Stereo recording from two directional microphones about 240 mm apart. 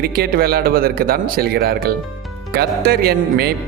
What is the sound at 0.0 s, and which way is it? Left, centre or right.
A man's voice, right.